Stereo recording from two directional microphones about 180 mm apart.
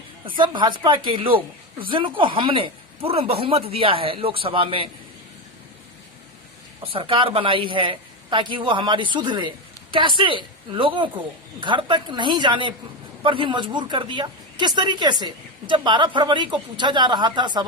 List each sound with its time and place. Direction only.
0.3 s speech: 25° right (ahead or behind)
6.8 s speech: 30° right (ahead or behind)